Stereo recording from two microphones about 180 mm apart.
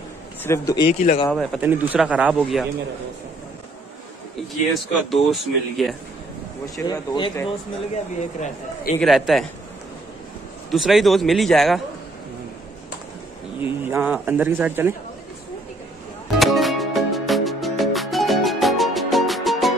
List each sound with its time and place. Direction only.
0.4 s speech: 15° left (ahead or behind)
0.8 s speech: 40° left (ahead or behind)
1.3 s speech: centre (ahead or behind)
4.7 s speech: centre (ahead or behind)
6.9 s speech: 25° left (ahead or behind)
8.2 s speech: 40° left (ahead or behind)
9.0 s speech: centre (ahead or behind)
10.7 s speech: centre (ahead or behind)
13.6 s speech: 10° right (ahead or behind)
16.3 s music: centre (ahead or behind)